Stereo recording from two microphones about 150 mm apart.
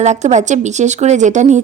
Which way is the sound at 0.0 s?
50° right (ahead or behind).